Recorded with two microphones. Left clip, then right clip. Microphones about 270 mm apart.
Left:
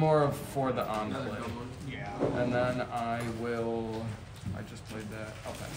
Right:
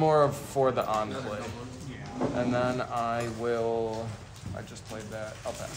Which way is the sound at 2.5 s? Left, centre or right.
Right.